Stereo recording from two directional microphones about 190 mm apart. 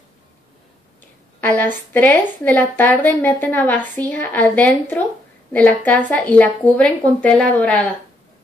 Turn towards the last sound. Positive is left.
turn(degrees=5)  # may be behind; listen again after turning